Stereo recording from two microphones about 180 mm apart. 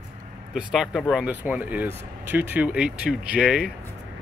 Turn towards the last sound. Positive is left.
turn(degrees=-5)  # may be behind; listen again after turning